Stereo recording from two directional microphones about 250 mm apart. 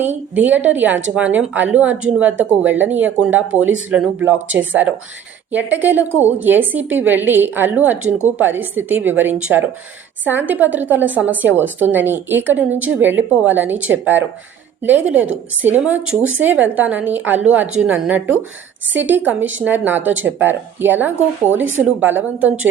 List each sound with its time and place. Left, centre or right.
0.3 s a woman's voice: centre
21.6 s speech: right
22.0 s a woman's voice: centre